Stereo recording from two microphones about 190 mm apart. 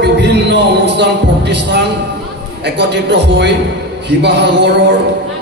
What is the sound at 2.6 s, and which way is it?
A man's voice, 65° right (ahead or behind).